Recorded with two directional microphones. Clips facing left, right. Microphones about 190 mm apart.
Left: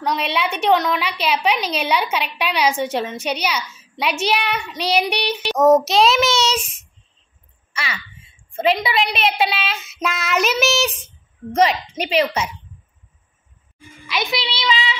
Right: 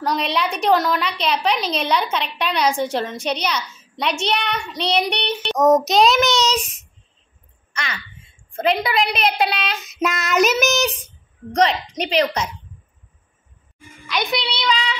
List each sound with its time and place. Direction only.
0.0 s a child's voice: centre (ahead or behind)
7.7 s a child's voice: 5° left (ahead or behind)
14.0 s a woman's voice: centre (ahead or behind)